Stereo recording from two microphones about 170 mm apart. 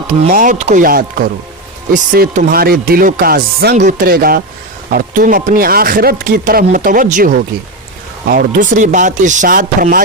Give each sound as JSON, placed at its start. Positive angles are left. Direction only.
{"t": 0.3, "sound": "speech", "side_deg": -50}
{"t": 3.8, "sound": "speech", "side_deg": -50}